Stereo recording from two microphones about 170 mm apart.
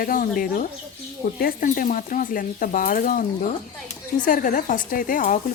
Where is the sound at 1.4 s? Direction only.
55° left (ahead or behind).